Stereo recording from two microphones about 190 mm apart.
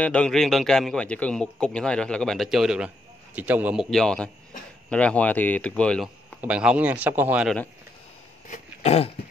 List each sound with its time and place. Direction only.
0.0 s speech: 5° left (ahead or behind)
3.9 s speech: 5° left (ahead or behind)
6.4 s speech: 5° right (ahead or behind)
8.5 s throat clearing: 35° left (ahead or behind)